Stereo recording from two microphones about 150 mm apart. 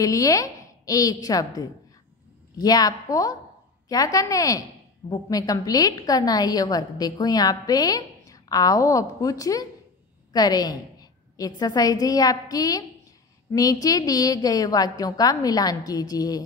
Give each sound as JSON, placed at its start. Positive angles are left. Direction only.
{"t": 0.0, "sound": "a woman's voice", "side_deg": 20}